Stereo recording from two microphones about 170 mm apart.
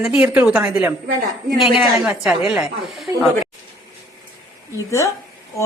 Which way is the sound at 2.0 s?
5° right (ahead or behind).